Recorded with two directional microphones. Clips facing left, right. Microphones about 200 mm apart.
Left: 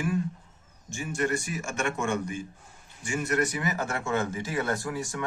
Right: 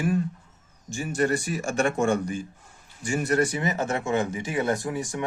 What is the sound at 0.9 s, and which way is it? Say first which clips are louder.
Speech: right 4 dB; 35° right (ahead or behind).